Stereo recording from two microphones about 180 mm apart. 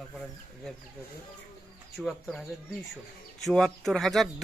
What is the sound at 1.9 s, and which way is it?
Speech, centre (ahead or behind).